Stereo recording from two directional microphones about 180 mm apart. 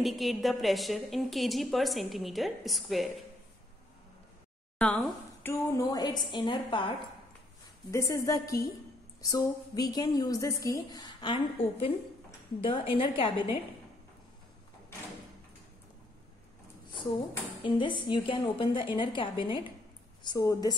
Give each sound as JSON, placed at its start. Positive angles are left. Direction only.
{"t": 0.0, "sound": "a woman's voice", "side_deg": 0}
{"t": 4.7, "sound": "a woman's voice", "side_deg": 5}
{"t": 7.9, "sound": "a woman's voice", "side_deg": 15}
{"t": 17.6, "sound": "a woman's voice", "side_deg": 25}